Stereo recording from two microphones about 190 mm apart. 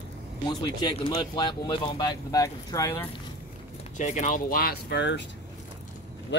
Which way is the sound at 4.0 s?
40° left (ahead or behind).